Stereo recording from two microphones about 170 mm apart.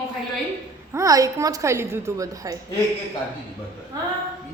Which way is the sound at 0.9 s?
20° right (ahead or behind).